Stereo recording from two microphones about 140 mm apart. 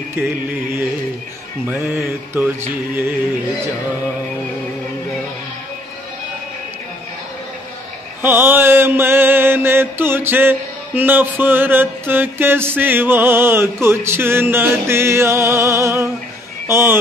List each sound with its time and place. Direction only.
0.1 s mantra: 15° right (ahead or behind)
8.2 s mantra: 15° right (ahead or behind)
16.6 s speech: 20° right (ahead or behind)